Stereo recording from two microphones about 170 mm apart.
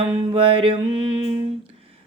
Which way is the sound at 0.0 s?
30° right (ahead or behind).